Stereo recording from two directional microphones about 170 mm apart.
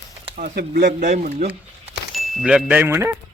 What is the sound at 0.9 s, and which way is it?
Speech, 45° right (ahead or behind).